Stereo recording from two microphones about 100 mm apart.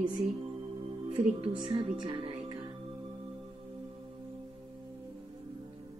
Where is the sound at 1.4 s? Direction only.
50° right (ahead or behind).